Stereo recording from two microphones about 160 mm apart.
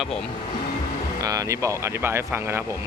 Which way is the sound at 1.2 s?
20° right (ahead or behind).